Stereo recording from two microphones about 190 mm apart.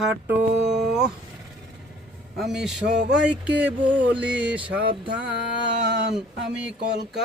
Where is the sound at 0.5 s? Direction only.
60° right (ahead or behind).